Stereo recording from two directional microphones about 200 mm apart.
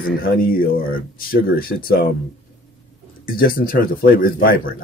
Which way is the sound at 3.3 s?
45° left (ahead or behind).